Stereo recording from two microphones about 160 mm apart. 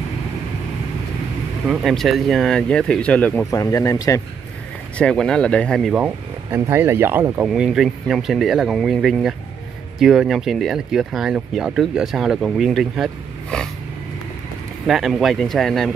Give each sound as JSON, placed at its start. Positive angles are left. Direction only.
{"t": 1.7, "sound": "speech", "side_deg": 0}
{"t": 3.4, "sound": "speech", "side_deg": 20}
{"t": 4.9, "sound": "speech", "side_deg": 5}
{"t": 6.5, "sound": "speech", "side_deg": -15}
{"t": 14.9, "sound": "speech", "side_deg": 0}